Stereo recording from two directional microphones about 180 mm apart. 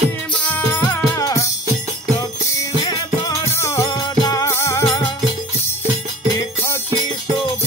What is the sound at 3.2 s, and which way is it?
Music, 15° left (ahead or behind).